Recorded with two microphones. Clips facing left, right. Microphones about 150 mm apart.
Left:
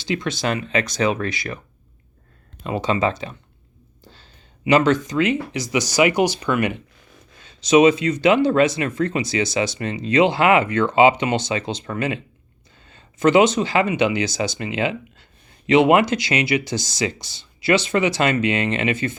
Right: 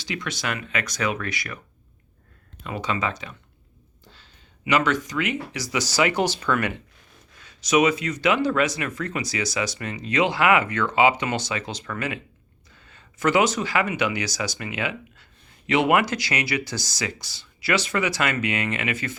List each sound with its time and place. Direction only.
0.0 s speech: 25° left (ahead or behind)
2.6 s speech: 30° left (ahead or behind)